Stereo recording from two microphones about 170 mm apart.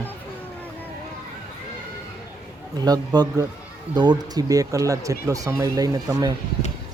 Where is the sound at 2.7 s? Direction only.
25° right (ahead or behind).